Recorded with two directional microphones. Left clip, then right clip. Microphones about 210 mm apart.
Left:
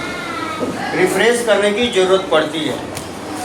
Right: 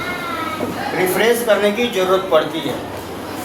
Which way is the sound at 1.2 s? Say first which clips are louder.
Even; centre (ahead or behind).